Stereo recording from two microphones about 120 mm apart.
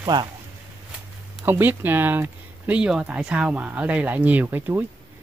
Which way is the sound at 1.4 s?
15° right (ahead or behind).